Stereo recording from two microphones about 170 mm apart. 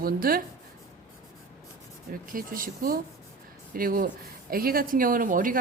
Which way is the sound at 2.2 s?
55° right (ahead or behind).